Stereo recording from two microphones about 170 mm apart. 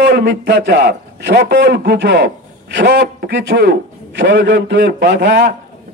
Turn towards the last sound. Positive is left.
turn(degrees=-80)